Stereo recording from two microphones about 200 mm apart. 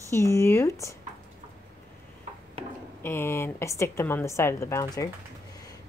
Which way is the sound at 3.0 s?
10° left (ahead or behind).